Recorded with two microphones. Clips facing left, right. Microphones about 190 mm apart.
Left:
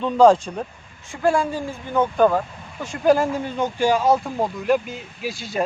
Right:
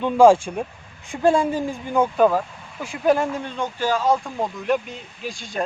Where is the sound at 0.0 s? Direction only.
10° right (ahead or behind).